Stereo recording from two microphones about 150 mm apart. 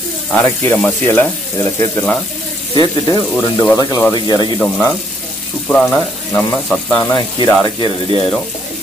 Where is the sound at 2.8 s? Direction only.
25° left (ahead or behind).